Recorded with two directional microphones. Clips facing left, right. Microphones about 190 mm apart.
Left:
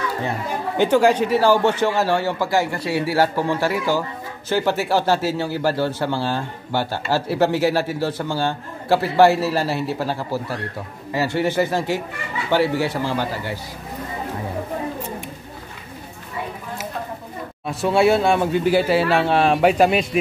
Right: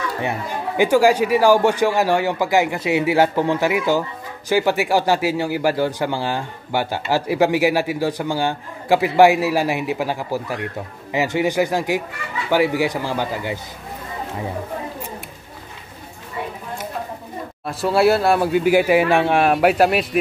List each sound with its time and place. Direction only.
0.7 s a man's voice: 10° right (ahead or behind)
17.6 s a man's voice: centre (ahead or behind)